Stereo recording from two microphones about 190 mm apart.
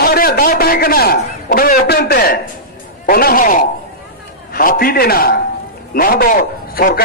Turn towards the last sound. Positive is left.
turn(degrees=50)  # may be behind; listen again after turning